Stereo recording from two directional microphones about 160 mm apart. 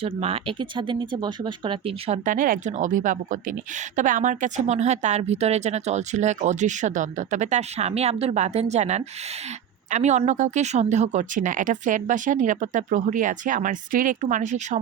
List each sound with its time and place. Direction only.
0.0 s speech: 40° right (ahead or behind)